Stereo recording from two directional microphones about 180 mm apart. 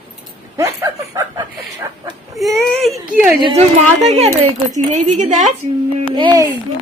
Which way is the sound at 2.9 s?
10° right (ahead or behind).